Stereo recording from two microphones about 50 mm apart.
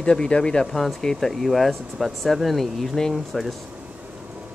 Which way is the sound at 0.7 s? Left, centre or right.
Centre.